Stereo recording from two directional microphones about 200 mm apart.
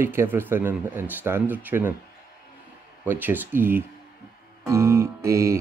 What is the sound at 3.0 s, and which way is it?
Music, 10° right (ahead or behind).